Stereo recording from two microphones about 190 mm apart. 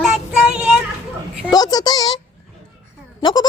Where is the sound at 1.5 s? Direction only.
20° left (ahead or behind).